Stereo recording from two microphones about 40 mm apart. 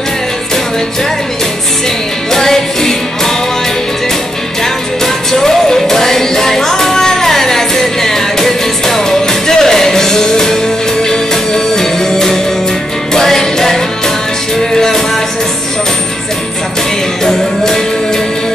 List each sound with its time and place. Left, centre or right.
2.3 s music: centre
5.0 s music: centre
17.2 s music: centre